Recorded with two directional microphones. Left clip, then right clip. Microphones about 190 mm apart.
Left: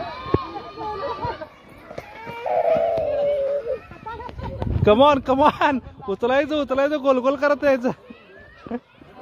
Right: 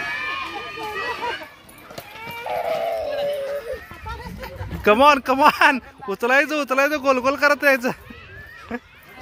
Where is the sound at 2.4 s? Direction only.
35° left (ahead or behind).